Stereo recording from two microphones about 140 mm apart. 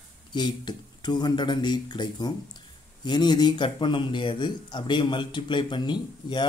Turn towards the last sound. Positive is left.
turn(degrees=35)  # may be behind; listen again after turning